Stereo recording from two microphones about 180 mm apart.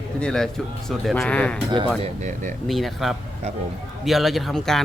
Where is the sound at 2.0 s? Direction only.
40° right (ahead or behind).